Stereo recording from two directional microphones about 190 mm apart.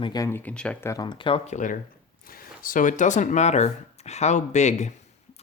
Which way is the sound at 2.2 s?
50° left (ahead or behind).